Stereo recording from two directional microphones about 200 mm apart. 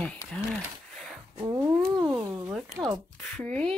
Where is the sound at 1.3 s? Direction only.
20° right (ahead or behind).